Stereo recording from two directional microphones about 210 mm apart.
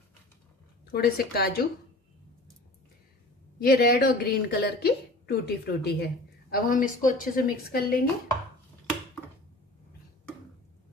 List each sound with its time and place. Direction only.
0.9 s a woman's voice: 45° left (ahead or behind)
3.5 s a woman's voice: 50° left (ahead or behind)